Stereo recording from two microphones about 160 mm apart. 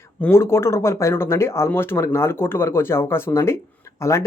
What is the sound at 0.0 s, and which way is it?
Speech, 15° left (ahead or behind).